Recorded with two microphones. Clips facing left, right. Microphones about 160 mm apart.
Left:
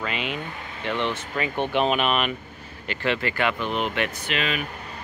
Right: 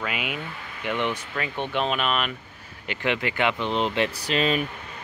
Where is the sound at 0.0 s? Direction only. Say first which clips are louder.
Left 1 dB; 5° right (ahead or behind).